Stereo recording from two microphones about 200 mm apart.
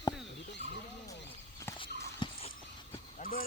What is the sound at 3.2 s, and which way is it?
Speech, 45° left (ahead or behind).